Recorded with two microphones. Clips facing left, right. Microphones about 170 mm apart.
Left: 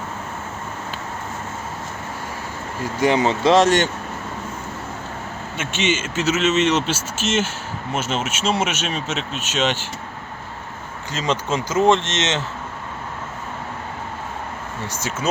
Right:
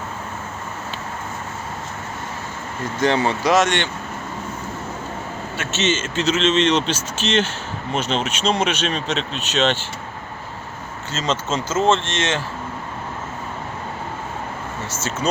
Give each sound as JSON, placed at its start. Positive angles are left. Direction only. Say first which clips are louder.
{"t": 3.0, "sound": "speech", "louder": "left 2 dB", "side_deg": 15}
{"t": 5.5, "sound": "a man's voice", "louder": "even", "side_deg": 10}
{"t": 11.1, "sound": "a man's voice", "louder": "left 1 dB", "side_deg": 15}
{"t": 14.8, "sound": "a man's voice", "louder": "right 1 dB", "side_deg": 15}